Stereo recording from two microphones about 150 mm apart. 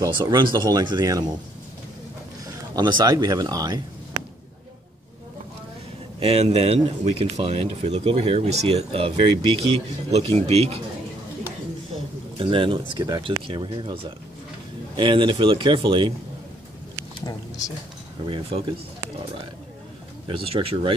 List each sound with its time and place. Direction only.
0.0 s speech: 30° right (ahead or behind)
2.4 s speech: 25° right (ahead or behind)
6.1 s speech: 40° right (ahead or behind)
12.4 s speech: 35° right (ahead or behind)
17.2 s a sound: 25° left (ahead or behind)
18.2 s speech: 35° right (ahead or behind)
20.2 s speech: 40° right (ahead or behind)